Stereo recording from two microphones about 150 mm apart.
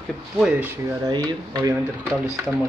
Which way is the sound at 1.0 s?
25° right (ahead or behind).